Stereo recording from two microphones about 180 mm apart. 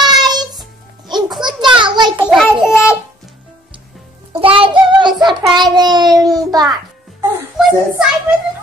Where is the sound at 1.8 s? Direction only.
25° right (ahead or behind).